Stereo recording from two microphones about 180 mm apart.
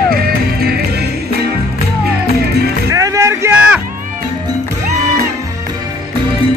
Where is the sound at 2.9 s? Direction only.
15° right (ahead or behind).